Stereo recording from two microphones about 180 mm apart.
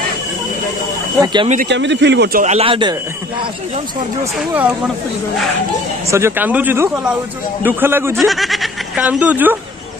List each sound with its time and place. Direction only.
1.2 s a man's voice: 25° right (ahead or behind)
1.7 s speech: 75° right (ahead or behind)
2.4 s a man's voice: 35° right (ahead or behind)
4.4 s speech: 10° right (ahead or behind)
6.0 s speech: 15° right (ahead or behind)
8.3 s speech: centre (ahead or behind)